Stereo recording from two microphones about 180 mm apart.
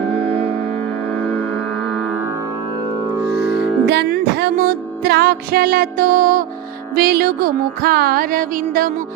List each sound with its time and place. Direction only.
0.1 s music: 35° right (ahead or behind)
3.8 s music: 70° right (ahead or behind); by 8.9 s 50° right (ahead or behind)